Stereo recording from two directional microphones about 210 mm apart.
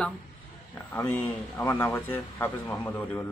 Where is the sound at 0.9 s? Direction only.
10° left (ahead or behind).